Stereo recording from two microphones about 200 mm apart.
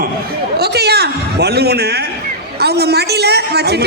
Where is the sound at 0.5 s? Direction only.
55° right (ahead or behind).